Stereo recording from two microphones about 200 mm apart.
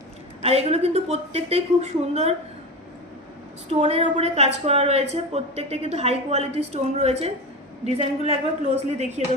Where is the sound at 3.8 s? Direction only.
30° right (ahead or behind).